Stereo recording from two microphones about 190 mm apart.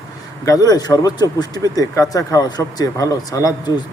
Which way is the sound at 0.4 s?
20° left (ahead or behind).